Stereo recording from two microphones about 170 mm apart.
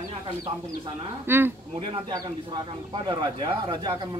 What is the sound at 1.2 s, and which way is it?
Speech, 10° right (ahead or behind).